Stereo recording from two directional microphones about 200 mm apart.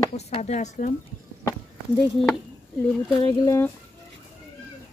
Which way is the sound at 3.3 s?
15° left (ahead or behind).